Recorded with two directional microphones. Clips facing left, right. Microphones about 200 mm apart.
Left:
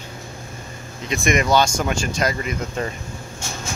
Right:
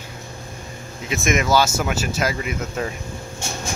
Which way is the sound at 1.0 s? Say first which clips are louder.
Left 1 dB; centre (ahead or behind).